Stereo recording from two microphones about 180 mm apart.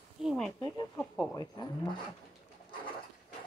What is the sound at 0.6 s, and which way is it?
Speech, 20° left (ahead or behind).